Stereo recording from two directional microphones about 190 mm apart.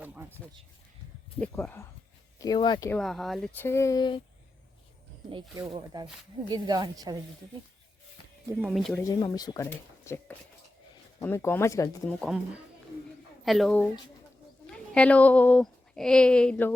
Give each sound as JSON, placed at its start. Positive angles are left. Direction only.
{"t": 0.0, "sound": "a sound", "side_deg": -10}
{"t": 1.4, "sound": "speech", "side_deg": 10}
{"t": 2.4, "sound": "speech", "side_deg": 20}
{"t": 2.9, "sound": "speech", "side_deg": 0}
{"t": 5.7, "sound": "speech", "side_deg": -20}
{"t": 8.4, "sound": "speech", "side_deg": -10}
{"t": 9.0, "sound": "speech", "side_deg": 20}
{"t": 12.2, "sound": "speech", "side_deg": -5}